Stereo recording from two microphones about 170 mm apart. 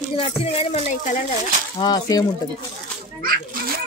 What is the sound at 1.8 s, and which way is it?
Speech, 25° left (ahead or behind).